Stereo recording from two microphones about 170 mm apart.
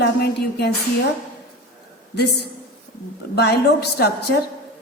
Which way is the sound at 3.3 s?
75° left (ahead or behind).